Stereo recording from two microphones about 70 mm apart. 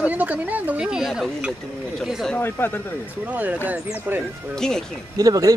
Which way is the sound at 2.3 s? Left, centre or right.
Left.